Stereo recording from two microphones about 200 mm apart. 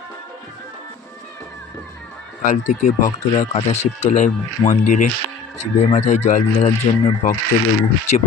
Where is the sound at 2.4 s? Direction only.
40° left (ahead or behind).